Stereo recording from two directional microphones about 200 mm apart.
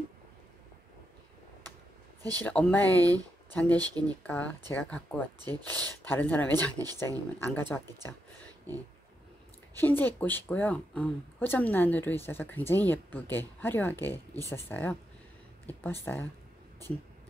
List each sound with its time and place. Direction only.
2.4 s speech: 5° left (ahead or behind)
3.0 s speech: 15° right (ahead or behind)
4.1 s speech: 10° left (ahead or behind)
9.8 s speech: 10° left (ahead or behind)